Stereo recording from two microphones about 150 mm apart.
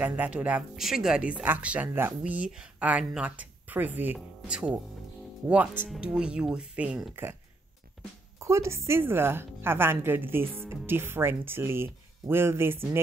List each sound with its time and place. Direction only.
0.0 s speech: 10° right (ahead or behind)
8.4 s speech: 20° right (ahead or behind)